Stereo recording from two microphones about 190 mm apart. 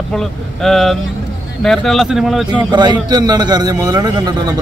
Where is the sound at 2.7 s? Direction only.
25° right (ahead or behind).